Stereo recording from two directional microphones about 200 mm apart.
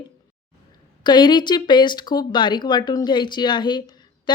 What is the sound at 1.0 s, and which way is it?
Speech, 20° left (ahead or behind).